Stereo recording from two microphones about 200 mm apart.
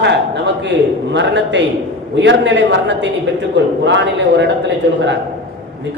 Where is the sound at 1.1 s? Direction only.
60° right (ahead or behind).